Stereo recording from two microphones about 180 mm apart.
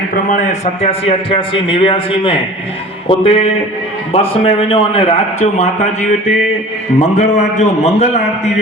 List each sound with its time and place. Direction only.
0.1 s a man's voice: 45° left (ahead or behind)